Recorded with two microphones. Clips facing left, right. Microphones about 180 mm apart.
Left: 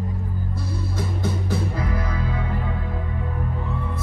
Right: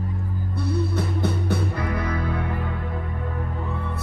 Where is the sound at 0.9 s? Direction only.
65° right (ahead or behind).